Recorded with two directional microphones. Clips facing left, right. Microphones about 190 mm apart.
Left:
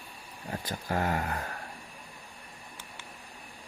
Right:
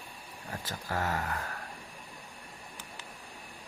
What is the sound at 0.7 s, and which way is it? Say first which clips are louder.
Speech: left 3 dB; 20° left (ahead or behind).